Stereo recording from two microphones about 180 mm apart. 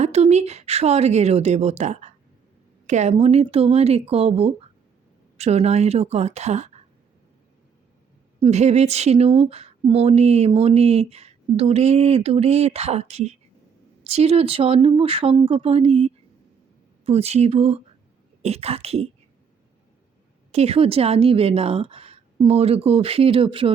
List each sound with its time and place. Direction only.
0.0 s speech: 35° right (ahead or behind)
8.4 s speech: 40° right (ahead or behind)
20.5 s speech: 35° right (ahead or behind)